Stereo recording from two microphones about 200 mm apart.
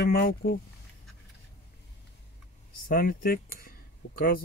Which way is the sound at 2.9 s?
45° left (ahead or behind).